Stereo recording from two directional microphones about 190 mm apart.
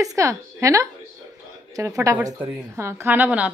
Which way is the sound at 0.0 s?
15° right (ahead or behind).